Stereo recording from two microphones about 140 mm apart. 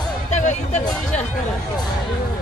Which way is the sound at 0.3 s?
55° left (ahead or behind).